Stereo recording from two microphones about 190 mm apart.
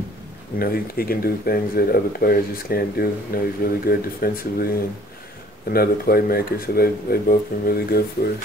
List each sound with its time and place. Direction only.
0.6 s speech: 50° left (ahead or behind)